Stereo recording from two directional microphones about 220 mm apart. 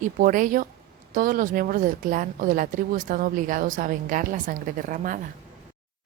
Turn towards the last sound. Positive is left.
turn(degrees=-35)  # may be behind; listen again after turning